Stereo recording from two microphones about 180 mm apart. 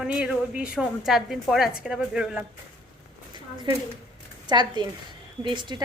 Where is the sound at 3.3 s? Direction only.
25° right (ahead or behind).